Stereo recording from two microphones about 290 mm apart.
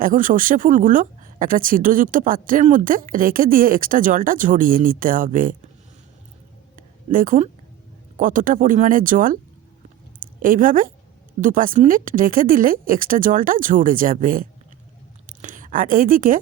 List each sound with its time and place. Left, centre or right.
0.0 s speech: right
6.7 s a sound: right
8.2 s a woman's voice: right